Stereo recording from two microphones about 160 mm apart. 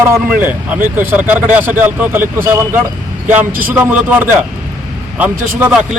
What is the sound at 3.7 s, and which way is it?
A man's voice, 10° right (ahead or behind).